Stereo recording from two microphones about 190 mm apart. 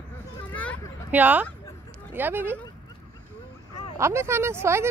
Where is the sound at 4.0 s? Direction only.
15° right (ahead or behind).